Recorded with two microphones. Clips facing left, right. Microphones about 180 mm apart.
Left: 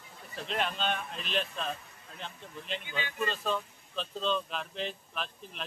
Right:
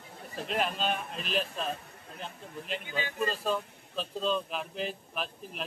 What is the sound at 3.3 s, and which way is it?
Speech, 5° right (ahead or behind).